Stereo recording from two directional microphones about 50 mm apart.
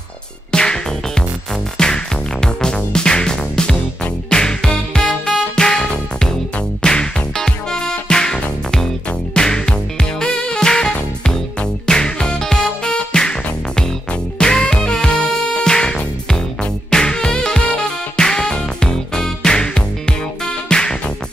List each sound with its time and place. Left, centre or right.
0.5 s music: centre